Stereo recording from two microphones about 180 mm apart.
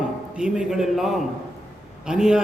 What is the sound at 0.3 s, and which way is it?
A man's voice, 5° right (ahead or behind).